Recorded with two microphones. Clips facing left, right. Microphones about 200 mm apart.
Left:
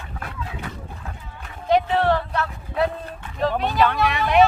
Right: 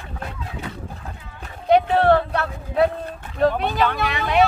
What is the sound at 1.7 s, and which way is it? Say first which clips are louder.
Speech: right 3 dB; 55° right (ahead or behind).